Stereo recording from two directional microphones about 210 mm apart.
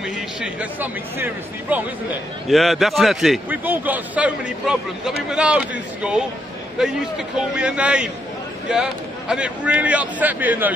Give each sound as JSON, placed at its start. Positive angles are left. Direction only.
{"t": 0.0, "sound": "a man's voice", "side_deg": -5}
{"t": 6.8, "sound": "a man's voice", "side_deg": 0}
{"t": 9.3, "sound": "a man's voice", "side_deg": -5}